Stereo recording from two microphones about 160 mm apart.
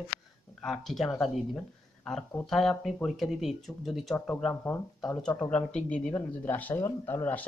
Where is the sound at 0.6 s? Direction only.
5° left (ahead or behind).